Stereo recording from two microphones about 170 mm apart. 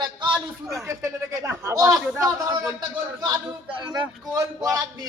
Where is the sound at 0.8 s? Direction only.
15° right (ahead or behind).